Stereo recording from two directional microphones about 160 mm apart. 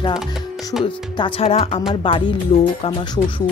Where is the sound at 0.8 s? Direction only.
30° left (ahead or behind).